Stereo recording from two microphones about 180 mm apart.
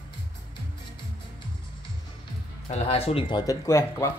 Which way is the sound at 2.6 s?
35° left (ahead or behind).